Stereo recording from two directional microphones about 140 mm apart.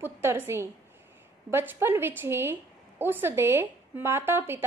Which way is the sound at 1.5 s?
15° right (ahead or behind).